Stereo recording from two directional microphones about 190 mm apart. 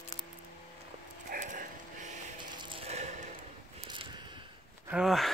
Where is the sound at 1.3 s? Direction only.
45° right (ahead or behind).